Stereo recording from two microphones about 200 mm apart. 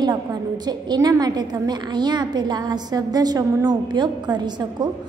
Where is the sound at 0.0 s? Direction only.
20° right (ahead or behind).